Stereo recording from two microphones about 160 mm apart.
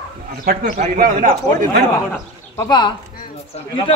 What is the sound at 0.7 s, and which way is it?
Speech, 45° right (ahead or behind).